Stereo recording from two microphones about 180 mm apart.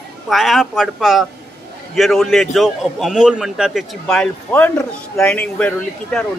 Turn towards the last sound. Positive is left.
turn(degrees=5)  # may be behind; listen again after turning